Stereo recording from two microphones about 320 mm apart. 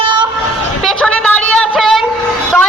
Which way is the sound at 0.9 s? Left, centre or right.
Centre.